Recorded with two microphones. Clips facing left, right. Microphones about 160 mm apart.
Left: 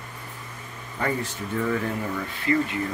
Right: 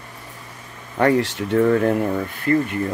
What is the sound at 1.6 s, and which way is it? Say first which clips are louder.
Speech: right 10 dB; 55° right (ahead or behind).